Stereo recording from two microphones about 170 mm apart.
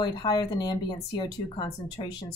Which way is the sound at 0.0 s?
25° left (ahead or behind).